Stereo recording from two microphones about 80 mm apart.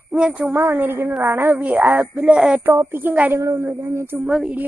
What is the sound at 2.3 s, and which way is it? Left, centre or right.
Speech, centre.